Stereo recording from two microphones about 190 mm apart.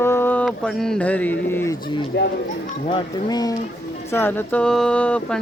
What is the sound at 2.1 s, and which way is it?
Speech, 65° left (ahead or behind).